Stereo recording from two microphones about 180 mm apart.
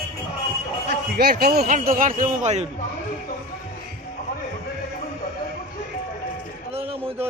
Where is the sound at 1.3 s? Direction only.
60° right (ahead or behind).